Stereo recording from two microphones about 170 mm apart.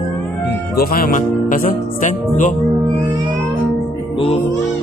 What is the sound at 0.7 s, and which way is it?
Music, 60° left (ahead or behind).